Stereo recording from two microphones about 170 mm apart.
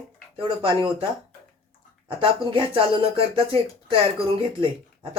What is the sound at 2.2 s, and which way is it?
Speech, 30° right (ahead or behind).